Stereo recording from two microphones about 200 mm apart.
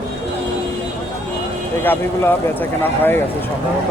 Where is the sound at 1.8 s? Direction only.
10° left (ahead or behind).